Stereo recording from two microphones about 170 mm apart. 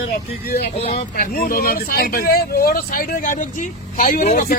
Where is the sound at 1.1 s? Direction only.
60° left (ahead or behind).